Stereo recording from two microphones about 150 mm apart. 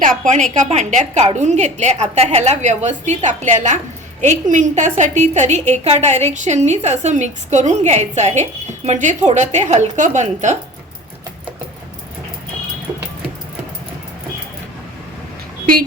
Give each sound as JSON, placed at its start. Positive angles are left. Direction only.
{"t": 0.0, "sound": "a woman's voice", "side_deg": -60}